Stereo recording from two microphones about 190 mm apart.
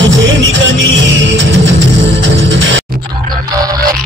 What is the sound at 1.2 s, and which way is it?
Music, 75° right (ahead or behind).